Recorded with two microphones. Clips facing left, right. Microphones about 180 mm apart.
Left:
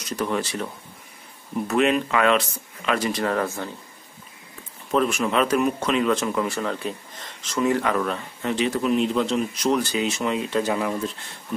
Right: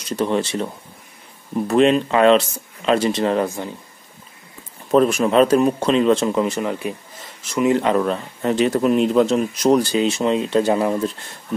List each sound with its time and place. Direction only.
0.1 s speech: 25° right (ahead or behind)
1.7 s speech: 30° right (ahead or behind)
4.9 s a man's voice: 40° right (ahead or behind)